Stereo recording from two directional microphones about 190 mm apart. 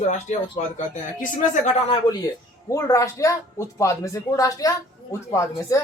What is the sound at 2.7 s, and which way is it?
Speech, 15° left (ahead or behind).